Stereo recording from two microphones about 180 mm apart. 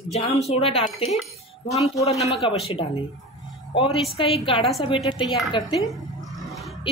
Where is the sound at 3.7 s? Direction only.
30° left (ahead or behind).